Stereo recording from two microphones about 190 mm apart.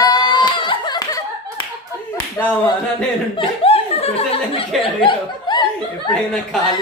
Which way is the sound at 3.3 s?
30° left (ahead or behind).